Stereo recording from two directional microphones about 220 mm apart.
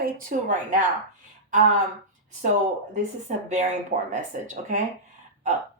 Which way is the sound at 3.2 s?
35° right (ahead or behind).